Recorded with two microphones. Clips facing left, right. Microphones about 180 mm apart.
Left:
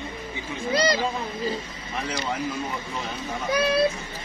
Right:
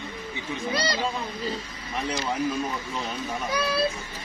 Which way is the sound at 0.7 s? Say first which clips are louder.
Left 7 dB; 25° left (ahead or behind).